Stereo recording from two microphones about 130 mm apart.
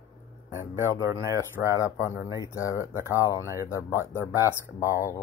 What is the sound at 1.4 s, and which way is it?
Speech, 25° left (ahead or behind).